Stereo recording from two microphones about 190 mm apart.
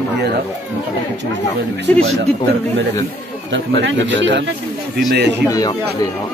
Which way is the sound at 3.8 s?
70° right (ahead or behind).